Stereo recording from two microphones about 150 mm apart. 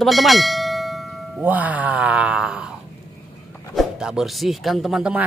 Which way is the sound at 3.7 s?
Centre (ahead or behind).